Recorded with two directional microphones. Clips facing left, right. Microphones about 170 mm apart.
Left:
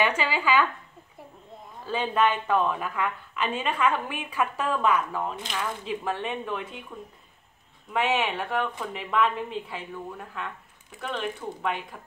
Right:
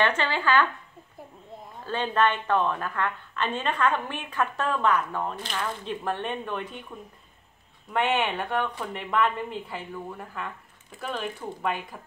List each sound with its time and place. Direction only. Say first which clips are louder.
0.0 s a woman's voice: even; 10° left (ahead or behind)
1.9 s a woman's voice: even; 10° left (ahead or behind)
7.9 s a woman's voice: even; centre (ahead or behind)